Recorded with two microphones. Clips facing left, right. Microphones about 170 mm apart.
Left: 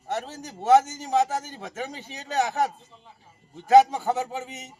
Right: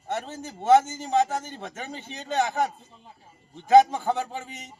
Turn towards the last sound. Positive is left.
turn(degrees=5)  # may be behind; listen again after turning